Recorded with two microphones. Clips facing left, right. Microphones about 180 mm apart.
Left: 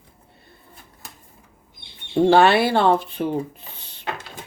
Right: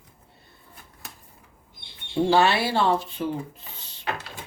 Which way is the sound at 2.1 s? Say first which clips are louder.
Left 5 dB; 55° left (ahead or behind).